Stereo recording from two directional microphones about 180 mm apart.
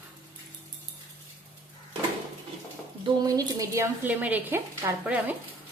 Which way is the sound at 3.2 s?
20° right (ahead or behind).